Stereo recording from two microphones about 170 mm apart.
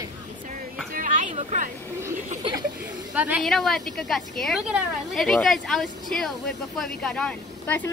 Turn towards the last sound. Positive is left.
turn(degrees=10)  # may be behind; listen again after turning